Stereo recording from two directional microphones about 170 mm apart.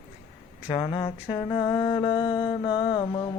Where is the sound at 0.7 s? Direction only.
30° left (ahead or behind).